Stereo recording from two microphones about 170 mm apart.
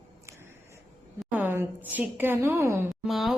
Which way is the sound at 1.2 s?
10° right (ahead or behind).